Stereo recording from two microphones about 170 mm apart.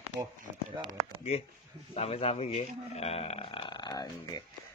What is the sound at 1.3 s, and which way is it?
A man's voice, 35° left (ahead or behind).